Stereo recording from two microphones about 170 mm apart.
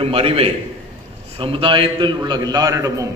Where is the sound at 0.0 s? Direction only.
35° right (ahead or behind).